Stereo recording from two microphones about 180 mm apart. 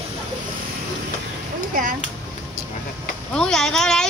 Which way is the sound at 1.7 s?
50° right (ahead or behind).